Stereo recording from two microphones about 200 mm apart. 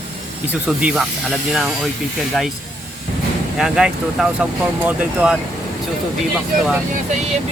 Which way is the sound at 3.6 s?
5° right (ahead or behind).